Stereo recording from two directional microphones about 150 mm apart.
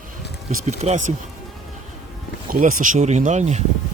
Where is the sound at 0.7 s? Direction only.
50° right (ahead or behind).